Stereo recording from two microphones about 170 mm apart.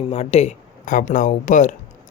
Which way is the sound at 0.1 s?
40° left (ahead or behind).